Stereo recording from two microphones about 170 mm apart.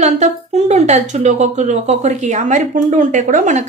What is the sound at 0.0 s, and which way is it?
A woman's voice, 40° right (ahead or behind).